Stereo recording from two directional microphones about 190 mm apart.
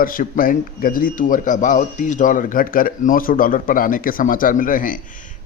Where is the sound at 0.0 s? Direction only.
45° left (ahead or behind).